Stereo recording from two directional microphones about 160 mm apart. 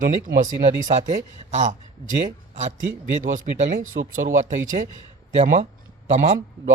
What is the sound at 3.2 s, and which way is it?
A man's voice, 50° right (ahead or behind).